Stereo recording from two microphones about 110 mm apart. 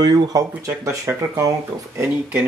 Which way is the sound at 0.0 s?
35° right (ahead or behind).